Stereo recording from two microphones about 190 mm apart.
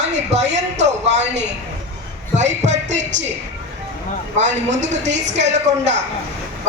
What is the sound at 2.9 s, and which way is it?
Speech, 70° right (ahead or behind).